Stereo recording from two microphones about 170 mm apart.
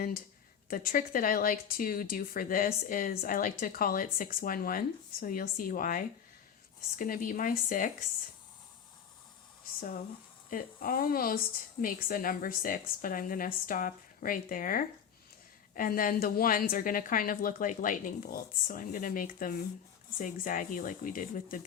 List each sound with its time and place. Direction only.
0.7 s speech: 55° left (ahead or behind)
10.5 s speech: 55° left (ahead or behind)